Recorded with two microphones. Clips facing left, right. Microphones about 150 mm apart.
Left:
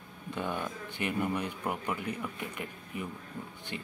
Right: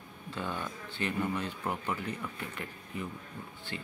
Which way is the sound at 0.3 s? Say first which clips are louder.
Left 2 dB; 15° left (ahead or behind).